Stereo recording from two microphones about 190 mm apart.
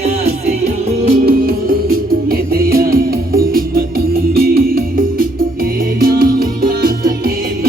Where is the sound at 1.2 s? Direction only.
50° right (ahead or behind).